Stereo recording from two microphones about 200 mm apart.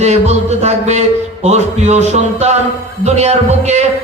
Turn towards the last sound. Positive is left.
turn(degrees=-35)  # may be behind; listen again after turning